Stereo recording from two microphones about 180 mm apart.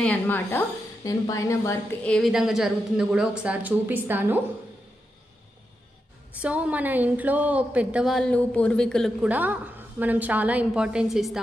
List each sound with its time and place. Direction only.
0.0 s a woman's voice: 10° left (ahead or behind)
2.0 s a woman's voice: 5° left (ahead or behind)
6.4 s a woman's voice: 5° right (ahead or behind)
9.3 s a woman's voice: 10° right (ahead or behind)